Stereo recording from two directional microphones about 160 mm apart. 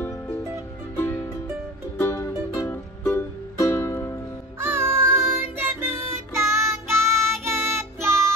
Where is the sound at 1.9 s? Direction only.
15° left (ahead or behind).